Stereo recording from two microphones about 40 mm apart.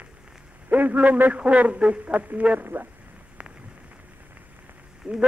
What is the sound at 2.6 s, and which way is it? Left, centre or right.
Speech, right.